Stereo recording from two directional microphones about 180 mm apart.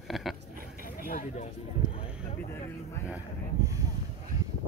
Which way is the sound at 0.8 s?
50° left (ahead or behind).